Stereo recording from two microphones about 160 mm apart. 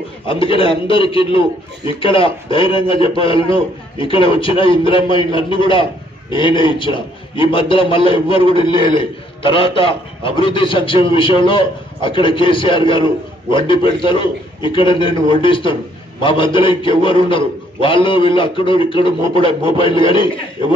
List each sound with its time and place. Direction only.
0.3 s a man's voice: 35° left (ahead or behind)